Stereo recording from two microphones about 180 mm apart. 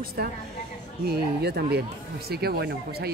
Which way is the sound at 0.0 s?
55° right (ahead or behind).